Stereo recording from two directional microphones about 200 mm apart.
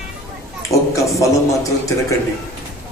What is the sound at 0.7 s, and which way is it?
A man's voice, 15° left (ahead or behind).